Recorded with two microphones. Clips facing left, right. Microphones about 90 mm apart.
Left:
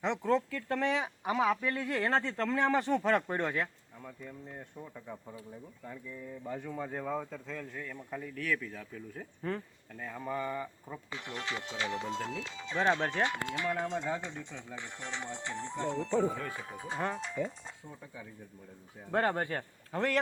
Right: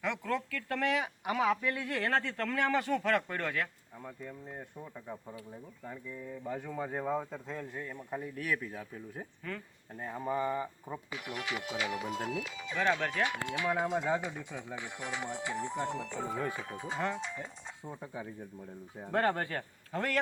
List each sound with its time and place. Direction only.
0.0 s speech: 30° left (ahead or behind)
1.3 s speech: 5° left (ahead or behind)
1.8 s speech: 20° left (ahead or behind)
4.8 s speech: 15° right (ahead or behind)
6.6 s speech: 10° right (ahead or behind)
8.7 s speech: 30° right (ahead or behind)
9.4 s speech: 35° left (ahead or behind)
9.9 s speech: 25° right (ahead or behind)
11.1 s speech: 10° right (ahead or behind)
12.7 s speech: 25° left (ahead or behind)
13.2 s speech: 15° right (ahead or behind)
16.6 s speech: centre (ahead or behind)
17.8 s speech: 30° right (ahead or behind)
19.1 s speech: 25° left (ahead or behind)